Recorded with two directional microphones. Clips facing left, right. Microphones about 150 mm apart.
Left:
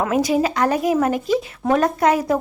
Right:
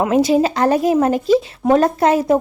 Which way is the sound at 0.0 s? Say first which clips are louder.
Right 4 dB; 25° right (ahead or behind).